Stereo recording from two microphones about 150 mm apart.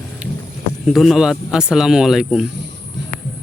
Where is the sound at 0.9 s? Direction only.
Centre (ahead or behind).